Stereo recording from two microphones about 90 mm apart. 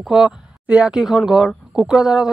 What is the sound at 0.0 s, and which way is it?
Speech, 5° right (ahead or behind).